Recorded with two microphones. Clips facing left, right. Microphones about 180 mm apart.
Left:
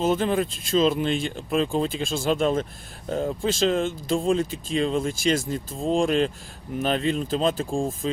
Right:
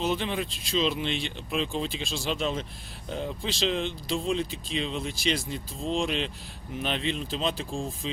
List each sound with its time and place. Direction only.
0.0 s speech: 45° left (ahead or behind)